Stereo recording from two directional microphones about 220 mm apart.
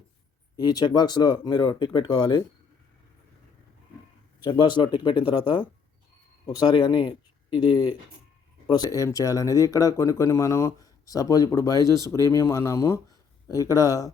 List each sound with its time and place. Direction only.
0.5 s speech: 20° left (ahead or behind)
4.4 s speech: 20° left (ahead or behind)